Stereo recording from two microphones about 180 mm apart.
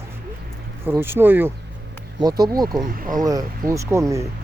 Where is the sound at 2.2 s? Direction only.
20° right (ahead or behind).